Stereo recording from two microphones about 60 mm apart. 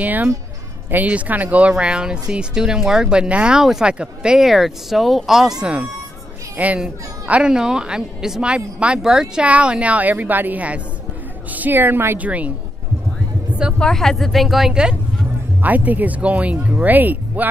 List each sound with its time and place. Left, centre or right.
0.0 s speech: right; by 5.7 s centre
6.5 s a child's voice: right
12.2 s speech: right
13.7 s a woman's voice: centre
14.7 s speech: centre
15.6 s speech: right